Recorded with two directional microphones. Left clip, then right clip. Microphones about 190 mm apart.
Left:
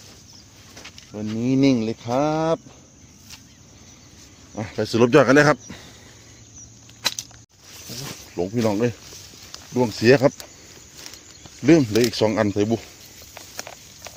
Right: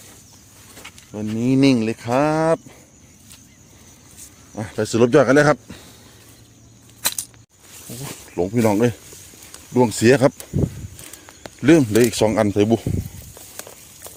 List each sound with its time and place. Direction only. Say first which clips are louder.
0.9 s speech: right 3 dB; 35° right (ahead or behind)
4.5 s speech: right 2 dB; 15° right (ahead or behind)
8.4 s speech: right 4 dB; 35° right (ahead or behind)
11.6 s speech: right 2 dB; 35° right (ahead or behind)
12.1 s speech: right 3 dB; 25° right (ahead or behind)